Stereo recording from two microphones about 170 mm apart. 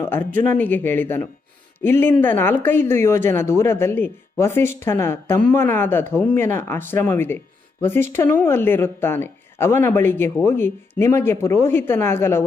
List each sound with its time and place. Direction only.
0.2 s speech: 50° right (ahead or behind)
0.5 s speech: 10° left (ahead or behind)